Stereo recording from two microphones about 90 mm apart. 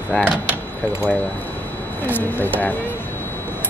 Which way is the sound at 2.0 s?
20° left (ahead or behind).